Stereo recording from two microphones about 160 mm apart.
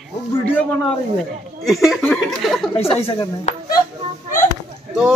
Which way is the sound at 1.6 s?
Centre (ahead or behind).